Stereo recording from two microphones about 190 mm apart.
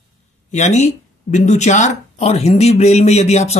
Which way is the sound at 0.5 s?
40° left (ahead or behind).